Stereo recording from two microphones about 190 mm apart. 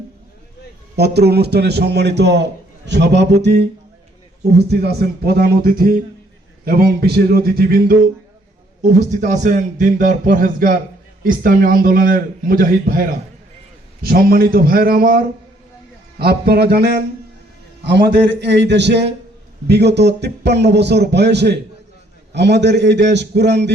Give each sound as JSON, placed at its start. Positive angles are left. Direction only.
{"t": 0.9, "sound": "a man's voice", "side_deg": -60}
{"t": 8.8, "sound": "a man's voice", "side_deg": -40}
{"t": 14.0, "sound": "a man's voice", "side_deg": -50}